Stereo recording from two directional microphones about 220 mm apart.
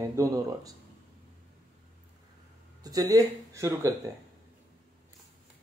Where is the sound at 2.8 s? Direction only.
15° right (ahead or behind).